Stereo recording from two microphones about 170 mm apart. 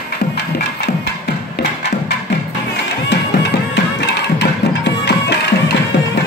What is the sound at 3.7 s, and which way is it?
Music, 90° left.